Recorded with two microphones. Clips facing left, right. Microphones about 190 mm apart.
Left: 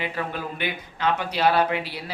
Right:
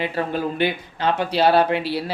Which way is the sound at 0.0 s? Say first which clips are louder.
Right 6 dB; 30° right (ahead or behind).